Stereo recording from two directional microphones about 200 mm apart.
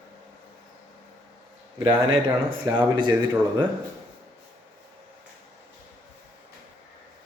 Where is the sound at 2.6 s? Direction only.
20° right (ahead or behind).